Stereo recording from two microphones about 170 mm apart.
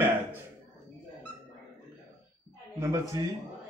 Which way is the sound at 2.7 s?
20° right (ahead or behind).